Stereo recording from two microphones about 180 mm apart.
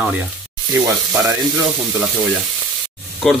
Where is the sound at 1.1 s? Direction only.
15° right (ahead or behind).